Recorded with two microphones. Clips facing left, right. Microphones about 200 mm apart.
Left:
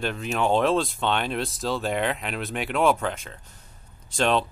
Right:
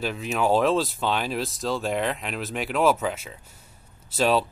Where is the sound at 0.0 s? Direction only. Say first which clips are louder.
Even; centre (ahead or behind).